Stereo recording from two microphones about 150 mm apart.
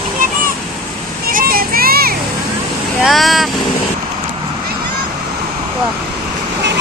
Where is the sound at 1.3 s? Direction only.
75° right (ahead or behind).